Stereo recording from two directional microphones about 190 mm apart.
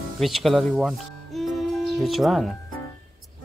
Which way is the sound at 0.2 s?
Centre (ahead or behind).